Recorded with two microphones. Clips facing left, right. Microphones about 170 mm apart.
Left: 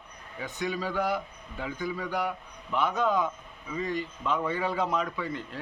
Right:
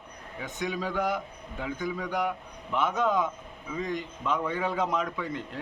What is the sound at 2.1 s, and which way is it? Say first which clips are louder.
A man's voice: right 1 dB; 15° right (ahead or behind).